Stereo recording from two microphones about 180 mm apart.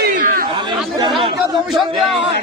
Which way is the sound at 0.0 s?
50° right (ahead or behind).